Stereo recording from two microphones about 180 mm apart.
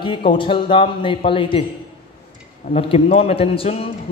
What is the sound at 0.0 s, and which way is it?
A man's voice, 25° left (ahead or behind).